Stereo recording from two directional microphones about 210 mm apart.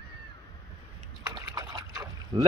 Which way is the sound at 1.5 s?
15° right (ahead or behind).